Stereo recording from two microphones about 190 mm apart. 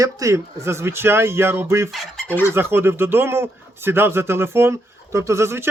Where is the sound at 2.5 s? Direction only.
10° right (ahead or behind).